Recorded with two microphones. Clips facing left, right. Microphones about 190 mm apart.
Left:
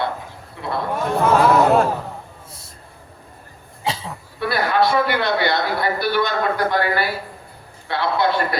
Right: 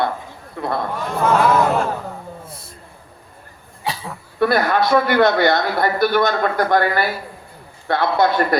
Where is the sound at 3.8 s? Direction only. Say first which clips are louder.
Left 1 dB; 25° left (ahead or behind).